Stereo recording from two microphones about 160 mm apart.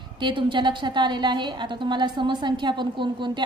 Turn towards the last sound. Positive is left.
turn(degrees=-30)  # may be behind; listen again after turning